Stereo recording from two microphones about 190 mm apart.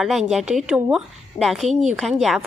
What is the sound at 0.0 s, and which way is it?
A woman's voice, centre (ahead or behind).